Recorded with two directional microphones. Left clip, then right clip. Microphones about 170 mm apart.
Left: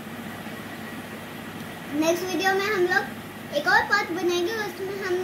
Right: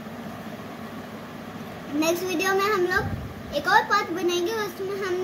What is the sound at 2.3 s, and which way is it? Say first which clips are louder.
Speech: even; 50° right (ahead or behind).